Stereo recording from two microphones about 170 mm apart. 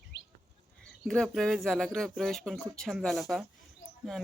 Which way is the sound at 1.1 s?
Centre (ahead or behind).